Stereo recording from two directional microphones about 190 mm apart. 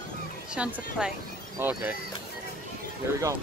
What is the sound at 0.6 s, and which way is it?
Speech, 5° right (ahead or behind).